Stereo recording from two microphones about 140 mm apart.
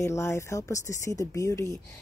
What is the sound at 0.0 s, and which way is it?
Speech, 20° left (ahead or behind).